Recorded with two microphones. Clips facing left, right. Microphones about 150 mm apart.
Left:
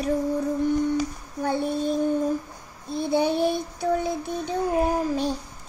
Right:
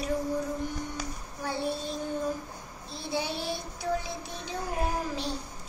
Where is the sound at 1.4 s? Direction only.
55° left (ahead or behind).